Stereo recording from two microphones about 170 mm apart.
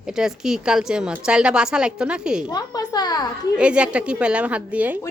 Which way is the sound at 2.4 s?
25° left (ahead or behind).